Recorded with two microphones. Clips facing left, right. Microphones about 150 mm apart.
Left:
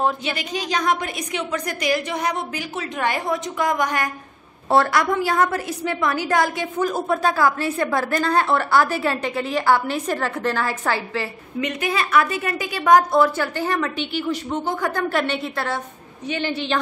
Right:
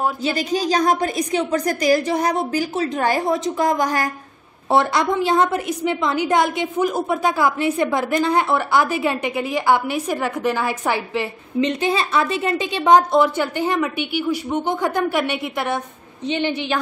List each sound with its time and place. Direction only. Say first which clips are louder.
0.2 s a woman's voice: right 6 dB; 40° right (ahead or behind)
4.6 s a woman's voice: even; 20° right (ahead or behind)